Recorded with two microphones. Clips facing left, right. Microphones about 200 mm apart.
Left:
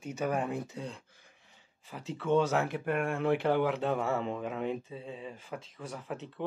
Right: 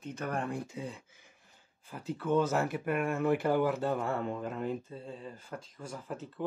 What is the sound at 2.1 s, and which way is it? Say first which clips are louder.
Speech: left 1 dB; centre (ahead or behind).